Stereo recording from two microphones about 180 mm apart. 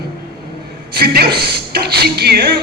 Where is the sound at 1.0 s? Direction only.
60° right (ahead or behind).